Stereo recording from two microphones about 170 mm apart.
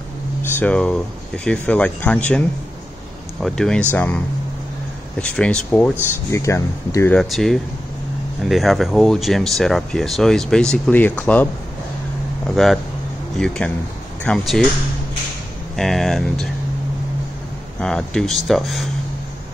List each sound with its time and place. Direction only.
0.4 s speech: 10° left (ahead or behind)
5.2 s speech: 5° left (ahead or behind)
7.2 s speech: centre (ahead or behind)
12.4 s speech: centre (ahead or behind)
15.7 s speech: centre (ahead or behind)
17.7 s speech: 5° left (ahead or behind)